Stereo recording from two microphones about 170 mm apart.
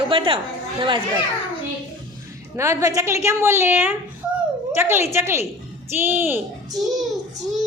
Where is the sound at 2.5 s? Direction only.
15° right (ahead or behind).